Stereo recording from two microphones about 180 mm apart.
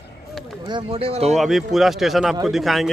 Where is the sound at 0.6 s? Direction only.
30° right (ahead or behind).